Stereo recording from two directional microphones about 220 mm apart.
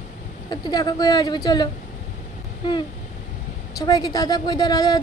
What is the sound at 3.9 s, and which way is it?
A woman's voice, 15° left (ahead or behind).